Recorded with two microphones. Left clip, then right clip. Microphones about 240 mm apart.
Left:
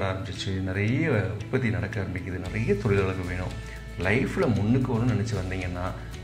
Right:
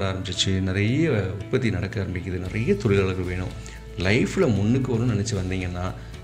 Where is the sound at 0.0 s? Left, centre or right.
Right.